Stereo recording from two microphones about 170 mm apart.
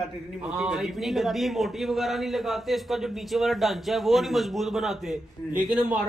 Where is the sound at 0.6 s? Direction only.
5° right (ahead or behind).